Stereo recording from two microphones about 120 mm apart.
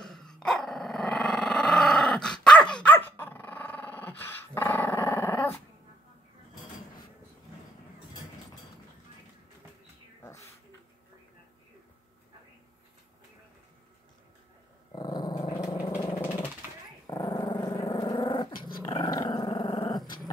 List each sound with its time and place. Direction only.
0.0 s dog: 5° left (ahead or behind)
14.9 s dog: 35° left (ahead or behind)
15.9 s dog: 25° left (ahead or behind); by 20.0 s 40° left (ahead or behind)